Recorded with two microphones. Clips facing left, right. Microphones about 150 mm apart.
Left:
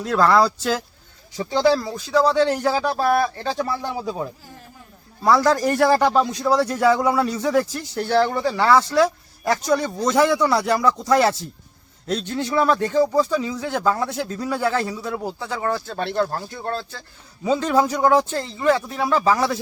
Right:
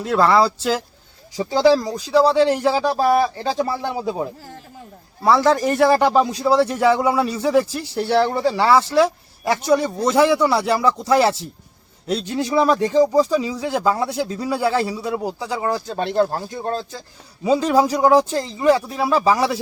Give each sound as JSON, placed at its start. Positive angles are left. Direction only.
{"t": 0.0, "sound": "speech", "side_deg": -5}
{"t": 3.6, "sound": "speech", "side_deg": -20}
{"t": 5.2, "sound": "speech", "side_deg": -5}
{"t": 6.1, "sound": "speech", "side_deg": -15}
{"t": 6.6, "sound": "speech", "side_deg": -5}
{"t": 12.0, "sound": "speech", "side_deg": -10}